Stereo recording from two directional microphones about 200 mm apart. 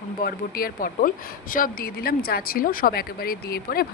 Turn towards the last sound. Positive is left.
turn(degrees=50)  # may be behind; listen again after turning